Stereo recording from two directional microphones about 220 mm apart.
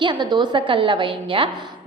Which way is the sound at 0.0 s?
20° right (ahead or behind).